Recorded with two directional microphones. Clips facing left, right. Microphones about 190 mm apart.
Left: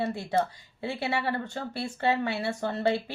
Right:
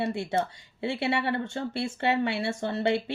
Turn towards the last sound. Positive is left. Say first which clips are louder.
# right 1 dB
turn(degrees=-25)  # may be behind; listen again after turning